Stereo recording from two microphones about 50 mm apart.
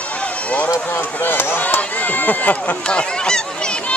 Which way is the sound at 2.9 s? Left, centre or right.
Centre.